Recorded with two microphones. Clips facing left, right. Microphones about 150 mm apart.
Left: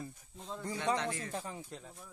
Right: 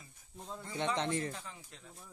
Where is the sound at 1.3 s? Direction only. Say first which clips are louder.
Left 7 dB; 35° left (ahead or behind).